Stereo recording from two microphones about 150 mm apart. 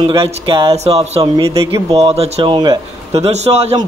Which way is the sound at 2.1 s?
40° right (ahead or behind).